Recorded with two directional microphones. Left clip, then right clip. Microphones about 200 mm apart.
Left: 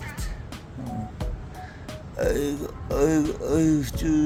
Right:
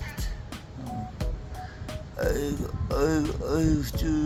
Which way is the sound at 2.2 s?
15° left (ahead or behind).